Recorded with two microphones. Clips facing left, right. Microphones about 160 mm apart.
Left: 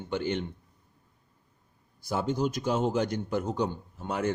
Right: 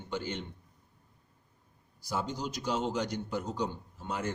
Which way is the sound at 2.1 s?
60° left (ahead or behind).